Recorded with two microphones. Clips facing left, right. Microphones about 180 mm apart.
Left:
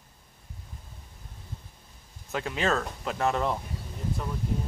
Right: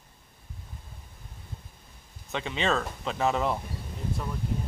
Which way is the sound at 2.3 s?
Centre (ahead or behind).